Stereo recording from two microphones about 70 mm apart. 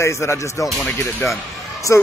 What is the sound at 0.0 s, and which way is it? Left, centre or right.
Speech, left.